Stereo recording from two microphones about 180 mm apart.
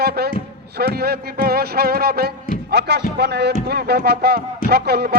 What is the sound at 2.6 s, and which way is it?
Music, 65° right (ahead or behind).